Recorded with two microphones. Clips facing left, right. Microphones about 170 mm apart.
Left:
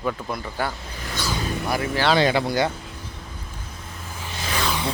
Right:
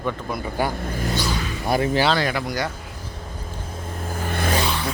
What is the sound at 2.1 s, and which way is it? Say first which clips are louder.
Speech: left 4 dB; 25° left (ahead or behind).